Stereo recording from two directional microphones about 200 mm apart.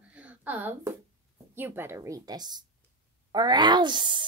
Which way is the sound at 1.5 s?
10° right (ahead or behind).